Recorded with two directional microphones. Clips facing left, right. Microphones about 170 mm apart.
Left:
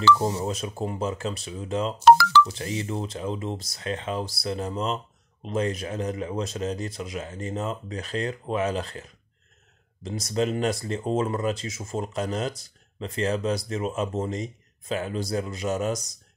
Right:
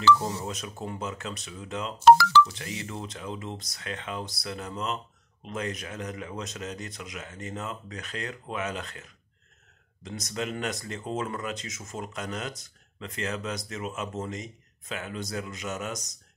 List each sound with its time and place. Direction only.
0.2 s speech: 25° left (ahead or behind)
2.0 s a sound: 70° left (ahead or behind)
2.4 s speech: 30° left (ahead or behind)